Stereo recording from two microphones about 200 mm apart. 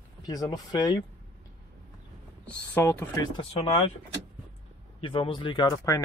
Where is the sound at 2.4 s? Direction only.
10° left (ahead or behind).